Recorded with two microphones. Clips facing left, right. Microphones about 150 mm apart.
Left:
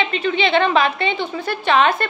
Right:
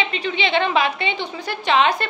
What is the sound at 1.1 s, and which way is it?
Speech, 50° left (ahead or behind).